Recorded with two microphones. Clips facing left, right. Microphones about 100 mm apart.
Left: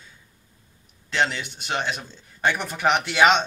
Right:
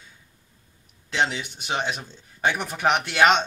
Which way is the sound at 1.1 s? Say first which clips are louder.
Left 1 dB; 5° right (ahead or behind).